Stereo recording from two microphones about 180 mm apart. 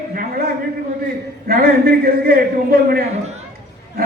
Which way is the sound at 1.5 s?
55° right (ahead or behind).